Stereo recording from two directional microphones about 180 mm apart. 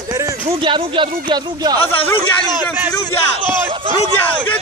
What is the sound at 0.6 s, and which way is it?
Speech, 25° right (ahead or behind).